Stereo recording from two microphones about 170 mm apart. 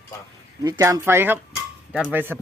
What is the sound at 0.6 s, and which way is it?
A man's voice, 20° right (ahead or behind).